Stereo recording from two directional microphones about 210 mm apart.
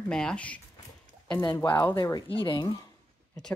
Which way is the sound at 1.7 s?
10° left (ahead or behind).